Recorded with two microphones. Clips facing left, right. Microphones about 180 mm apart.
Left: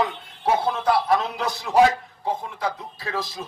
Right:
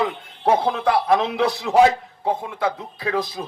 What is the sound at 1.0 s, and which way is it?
Speech, 60° right (ahead or behind).